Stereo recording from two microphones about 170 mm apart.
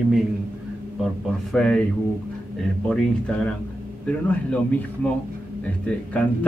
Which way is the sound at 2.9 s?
5° left (ahead or behind).